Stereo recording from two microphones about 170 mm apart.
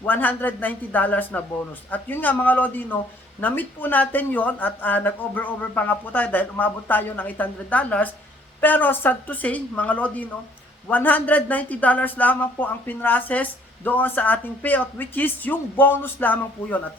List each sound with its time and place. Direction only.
0.0 s speech: 10° left (ahead or behind)